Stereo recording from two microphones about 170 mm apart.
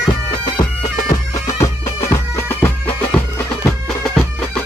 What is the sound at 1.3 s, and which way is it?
Bagpipes, 15° left (ahead or behind).